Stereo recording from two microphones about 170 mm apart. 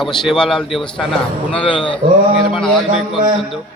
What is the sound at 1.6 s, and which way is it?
Speech, 30° left (ahead or behind).